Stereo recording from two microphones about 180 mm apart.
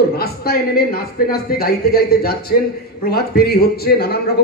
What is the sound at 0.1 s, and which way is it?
A man's voice, 60° left (ahead or behind).